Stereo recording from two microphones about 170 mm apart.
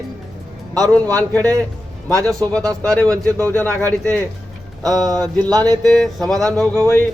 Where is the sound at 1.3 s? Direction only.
10° left (ahead or behind).